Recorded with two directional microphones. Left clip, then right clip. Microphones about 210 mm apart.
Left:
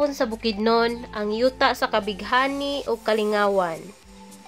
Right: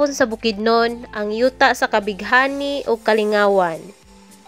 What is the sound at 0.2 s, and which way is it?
A woman's voice, 25° right (ahead or behind).